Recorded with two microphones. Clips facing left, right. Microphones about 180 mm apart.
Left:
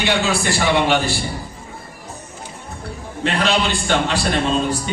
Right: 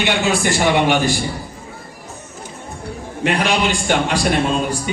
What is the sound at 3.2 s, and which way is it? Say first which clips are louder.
A man's voice: right 1 dB; 15° right (ahead or behind).